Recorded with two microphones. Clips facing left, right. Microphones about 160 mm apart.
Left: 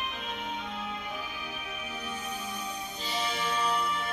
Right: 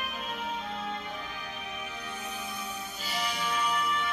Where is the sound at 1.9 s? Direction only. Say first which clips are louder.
Left 2 dB; 10° left (ahead or behind).